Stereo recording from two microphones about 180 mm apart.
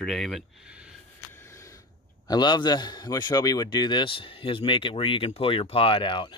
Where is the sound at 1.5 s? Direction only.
15° left (ahead or behind).